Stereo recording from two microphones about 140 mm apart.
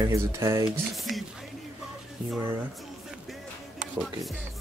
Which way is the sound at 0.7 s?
Centre (ahead or behind).